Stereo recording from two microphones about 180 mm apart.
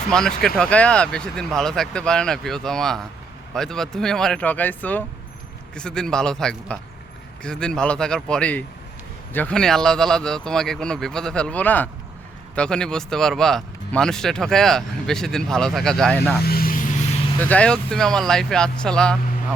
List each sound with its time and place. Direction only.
0.1 s speech: 5° left (ahead or behind)
16.4 s vehicle: 55° left (ahead or behind)
17.4 s speech: 5° left (ahead or behind)